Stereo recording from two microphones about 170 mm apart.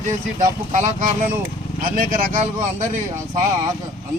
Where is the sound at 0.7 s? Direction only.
50° right (ahead or behind).